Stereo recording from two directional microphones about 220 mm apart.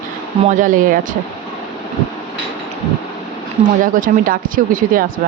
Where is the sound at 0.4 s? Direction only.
35° right (ahead or behind).